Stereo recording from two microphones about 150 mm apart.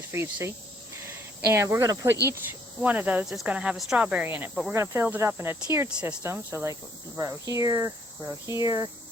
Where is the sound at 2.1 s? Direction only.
90° right.